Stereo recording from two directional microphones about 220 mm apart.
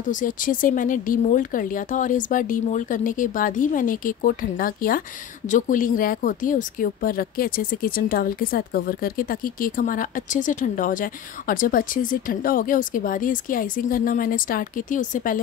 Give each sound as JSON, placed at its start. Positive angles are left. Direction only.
{"t": 0.0, "sound": "a woman's voice", "side_deg": 35}